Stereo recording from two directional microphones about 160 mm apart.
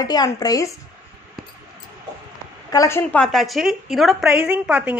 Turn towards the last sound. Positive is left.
turn(degrees=-5)  # may be behind; listen again after turning